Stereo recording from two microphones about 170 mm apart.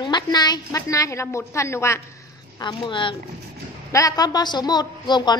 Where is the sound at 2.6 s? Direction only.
30° left (ahead or behind).